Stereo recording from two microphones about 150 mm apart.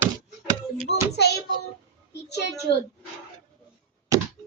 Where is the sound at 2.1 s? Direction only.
90° left.